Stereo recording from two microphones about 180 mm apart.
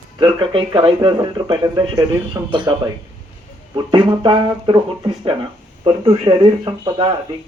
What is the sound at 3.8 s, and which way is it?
Speech, 25° right (ahead or behind).